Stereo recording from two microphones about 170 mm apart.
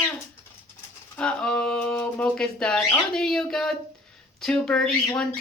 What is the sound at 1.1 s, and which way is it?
Speech, 5° left (ahead or behind).